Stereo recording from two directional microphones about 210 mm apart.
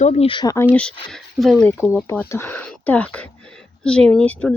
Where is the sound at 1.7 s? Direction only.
10° left (ahead or behind).